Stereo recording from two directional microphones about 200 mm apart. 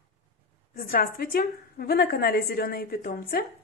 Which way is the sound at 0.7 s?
45° left (ahead or behind).